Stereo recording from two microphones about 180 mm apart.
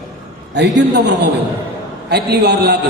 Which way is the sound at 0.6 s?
70° right (ahead or behind).